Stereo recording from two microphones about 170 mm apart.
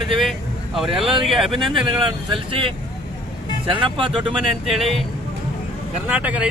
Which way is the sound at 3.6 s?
30° right (ahead or behind).